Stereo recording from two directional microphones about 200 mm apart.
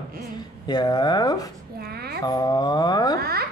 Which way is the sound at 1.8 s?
50° right (ahead or behind).